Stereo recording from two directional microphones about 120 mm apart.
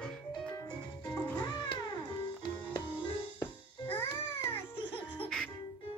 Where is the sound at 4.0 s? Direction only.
20° left (ahead or behind).